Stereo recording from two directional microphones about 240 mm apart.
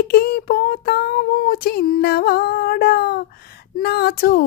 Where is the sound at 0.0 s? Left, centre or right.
Left.